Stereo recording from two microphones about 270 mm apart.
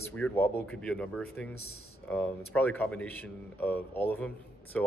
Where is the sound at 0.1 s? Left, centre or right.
Centre.